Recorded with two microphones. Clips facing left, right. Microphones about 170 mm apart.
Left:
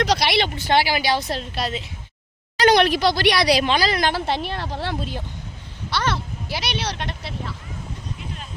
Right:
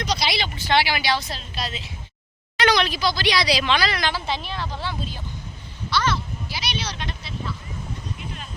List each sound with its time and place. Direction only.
0.0 s a woman's voice: 70° left (ahead or behind)
0.8 s a woman's voice: 45° left (ahead or behind)
1.2 s a woman's voice: 65° left (ahead or behind)